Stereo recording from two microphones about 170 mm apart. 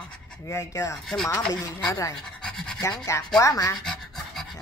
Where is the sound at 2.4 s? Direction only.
5° left (ahead or behind).